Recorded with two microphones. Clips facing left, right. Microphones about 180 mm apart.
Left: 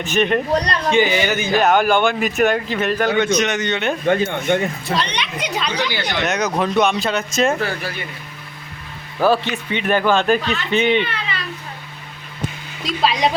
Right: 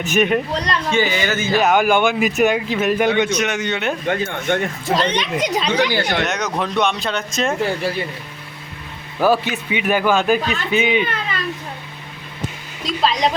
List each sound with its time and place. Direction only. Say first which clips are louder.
0.0 s speech: right 1 dB; 5° right (ahead or behind)
0.9 s speech: left 3 dB; 20° left (ahead or behind)
1.5 s speech: even; 5° right (ahead or behind)
3.0 s speech: even; 15° right (ahead or behind)
4.4 s speech: left 1 dB; 10° left (ahead or behind)
4.9 s speech: right 4 dB; 45° right (ahead or behind)
6.2 s speech: left 3 dB; centre (ahead or behind)
7.6 s speech: right 4 dB; 25° right (ahead or behind)
9.2 s speech: even; 10° right (ahead or behind)
11.0 s a sound: right 2 dB; 45° right (ahead or behind)
12.8 s speech: even; 5° left (ahead or behind)